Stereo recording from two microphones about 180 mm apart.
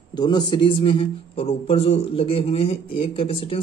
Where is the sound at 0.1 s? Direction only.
25° left (ahead or behind).